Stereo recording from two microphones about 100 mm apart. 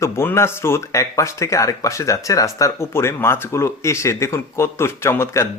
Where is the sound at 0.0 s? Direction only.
25° left (ahead or behind).